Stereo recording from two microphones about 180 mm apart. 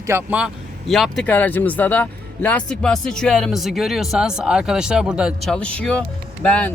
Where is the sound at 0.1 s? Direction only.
10° right (ahead or behind).